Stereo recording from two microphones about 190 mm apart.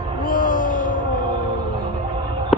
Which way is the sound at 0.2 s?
45° left (ahead or behind).